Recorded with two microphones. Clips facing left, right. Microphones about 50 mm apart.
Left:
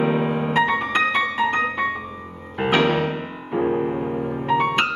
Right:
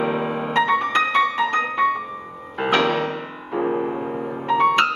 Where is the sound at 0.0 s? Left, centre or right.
Centre.